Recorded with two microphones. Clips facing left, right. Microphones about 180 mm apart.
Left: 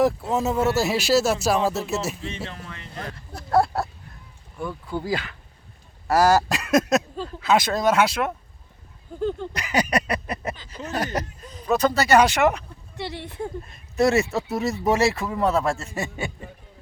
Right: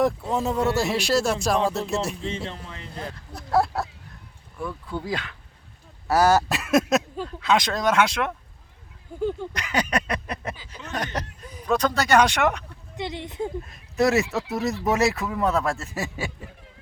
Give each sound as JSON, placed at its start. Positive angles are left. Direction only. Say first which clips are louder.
{"t": 0.0, "sound": "speech", "louder": "left 2 dB", "side_deg": 5}
{"t": 2.5, "sound": "speech", "louder": "right 1 dB", "side_deg": -30}
{"t": 3.3, "sound": "speech", "louder": "left 2 dB", "side_deg": 0}
{"t": 9.6, "sound": "a sound", "louder": "left 4 dB", "side_deg": 5}
{"t": 11.6, "sound": "speech", "louder": "left 2 dB", "side_deg": 5}
{"t": 13.0, "sound": "speech", "louder": "right 1 dB", "side_deg": -20}
{"t": 13.7, "sound": "speech", "louder": "left 2 dB", "side_deg": 0}